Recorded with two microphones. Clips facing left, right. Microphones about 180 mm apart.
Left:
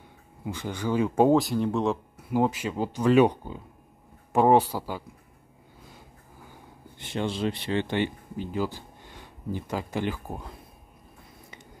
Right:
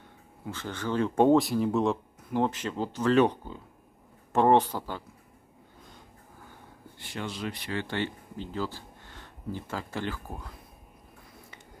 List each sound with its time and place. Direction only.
0.5 s speech: 15° left (ahead or behind)
2.1 s speech: 10° left (ahead or behind)
7.0 s speech: 25° left (ahead or behind)